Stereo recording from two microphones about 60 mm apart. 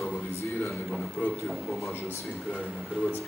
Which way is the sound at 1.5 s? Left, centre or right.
Centre.